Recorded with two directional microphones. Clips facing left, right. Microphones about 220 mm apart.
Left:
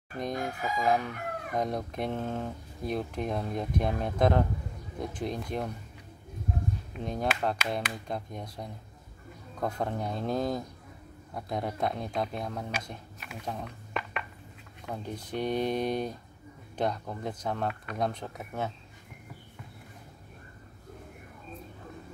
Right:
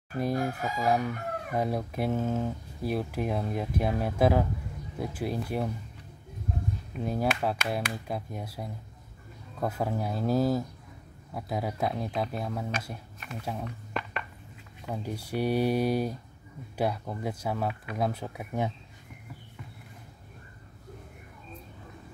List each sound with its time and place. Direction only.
0.2 s chicken: 5° right (ahead or behind)
7.0 s chicken: 5° right (ahead or behind)
9.6 s speech: 5° right (ahead or behind)
14.9 s chicken: 10° right (ahead or behind)